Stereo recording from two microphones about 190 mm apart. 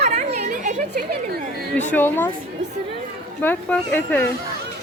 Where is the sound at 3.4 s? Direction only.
10° left (ahead or behind).